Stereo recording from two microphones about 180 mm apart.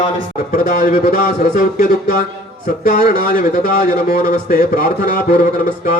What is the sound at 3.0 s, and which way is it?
Speech, 55° left (ahead or behind).